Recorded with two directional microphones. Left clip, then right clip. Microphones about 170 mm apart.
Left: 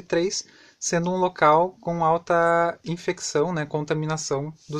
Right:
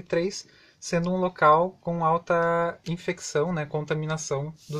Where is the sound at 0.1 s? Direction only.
40° left (ahead or behind).